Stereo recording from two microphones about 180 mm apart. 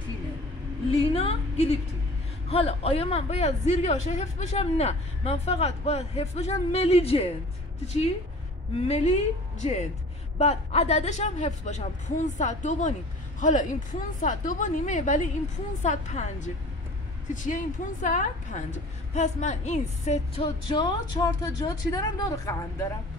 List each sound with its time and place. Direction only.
1.1 s a woman's voice: 35° left (ahead or behind); by 22.6 s 20° left (ahead or behind)